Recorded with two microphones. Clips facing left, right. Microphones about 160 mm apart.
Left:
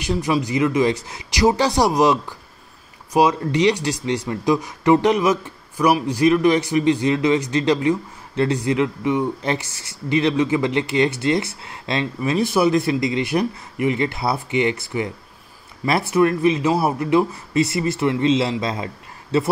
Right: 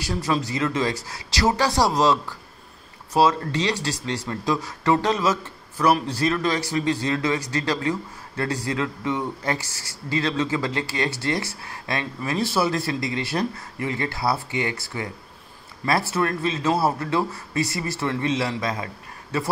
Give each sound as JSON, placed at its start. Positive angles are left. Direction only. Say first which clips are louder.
{"t": 0.0, "sound": "speech", "louder": "left 4 dB", "side_deg": 20}